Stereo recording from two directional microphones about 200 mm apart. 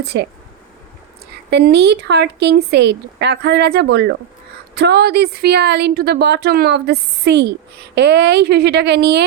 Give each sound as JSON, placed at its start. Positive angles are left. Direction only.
{"t": 0.0, "sound": "a woman's voice", "side_deg": -55}
{"t": 1.5, "sound": "a woman's voice", "side_deg": -55}